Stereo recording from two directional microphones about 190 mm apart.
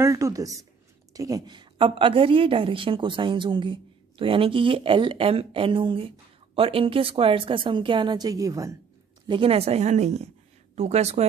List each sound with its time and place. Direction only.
0.0 s a woman's voice: 15° right (ahead or behind)
9.3 s a woman's voice: 30° right (ahead or behind)